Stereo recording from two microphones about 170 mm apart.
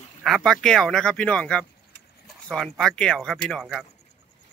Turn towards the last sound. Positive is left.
turn(degrees=5)  # may be behind; listen again after turning